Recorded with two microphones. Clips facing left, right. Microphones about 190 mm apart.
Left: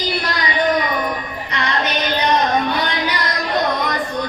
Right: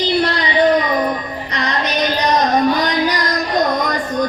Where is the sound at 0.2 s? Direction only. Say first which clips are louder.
Right 6 dB; 30° right (ahead or behind).